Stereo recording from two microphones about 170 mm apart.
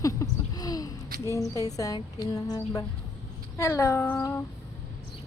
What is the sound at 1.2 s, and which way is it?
Speech, 20° left (ahead or behind).